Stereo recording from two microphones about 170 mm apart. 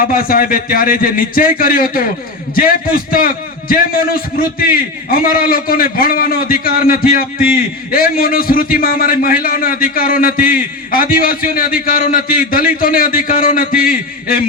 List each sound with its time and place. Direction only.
0.0 s a man's voice: 55° left (ahead or behind)